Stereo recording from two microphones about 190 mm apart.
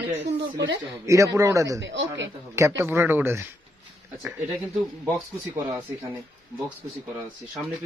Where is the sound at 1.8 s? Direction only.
70° right (ahead or behind).